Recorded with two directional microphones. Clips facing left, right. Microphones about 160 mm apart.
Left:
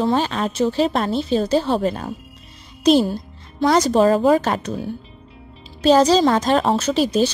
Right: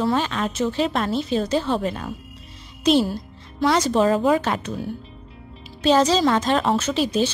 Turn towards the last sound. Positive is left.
turn(degrees=40)  # may be behind; listen again after turning